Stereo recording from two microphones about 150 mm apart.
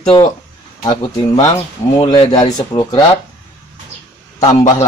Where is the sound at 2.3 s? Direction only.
30° left (ahead or behind).